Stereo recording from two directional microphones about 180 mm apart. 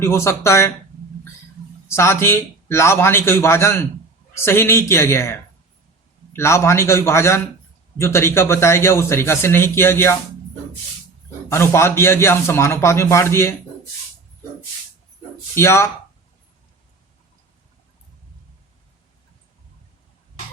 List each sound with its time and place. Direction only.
0.0 s speech: 15° left (ahead or behind)
1.9 s speech: 15° left (ahead or behind)
11.4 s speech: 15° left (ahead or behind)
15.5 s speech: 15° left (ahead or behind)